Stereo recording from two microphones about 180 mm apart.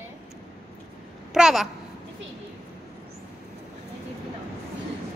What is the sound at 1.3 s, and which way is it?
Speech, 5° right (ahead or behind).